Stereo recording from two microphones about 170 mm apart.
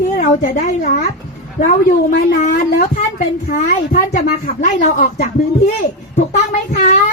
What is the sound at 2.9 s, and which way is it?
A woman's voice, 45° left (ahead or behind).